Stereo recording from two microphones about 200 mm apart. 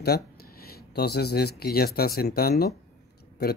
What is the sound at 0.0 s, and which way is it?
A man's voice, 50° left (ahead or behind).